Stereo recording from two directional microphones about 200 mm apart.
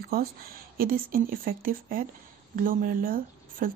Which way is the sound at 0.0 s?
50° right (ahead or behind).